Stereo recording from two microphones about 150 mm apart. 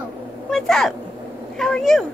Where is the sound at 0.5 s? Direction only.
Centre (ahead or behind).